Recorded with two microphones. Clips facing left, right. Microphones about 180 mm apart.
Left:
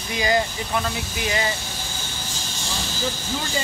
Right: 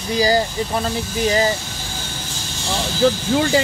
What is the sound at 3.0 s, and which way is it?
Speech, 75° right (ahead or behind).